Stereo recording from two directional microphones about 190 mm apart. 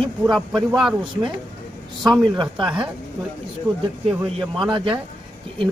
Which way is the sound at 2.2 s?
25° right (ahead or behind).